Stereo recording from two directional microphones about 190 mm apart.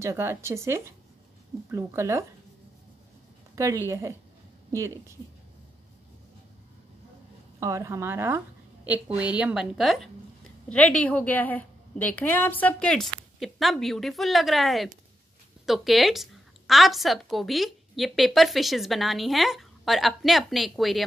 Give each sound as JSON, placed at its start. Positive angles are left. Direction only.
{"t": 0.0, "sound": "speech", "side_deg": -15}
{"t": 3.5, "sound": "speech", "side_deg": -15}
{"t": 7.6, "sound": "a woman's voice", "side_deg": -15}